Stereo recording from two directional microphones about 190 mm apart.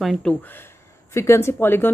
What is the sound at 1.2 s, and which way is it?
Speech, 15° left (ahead or behind).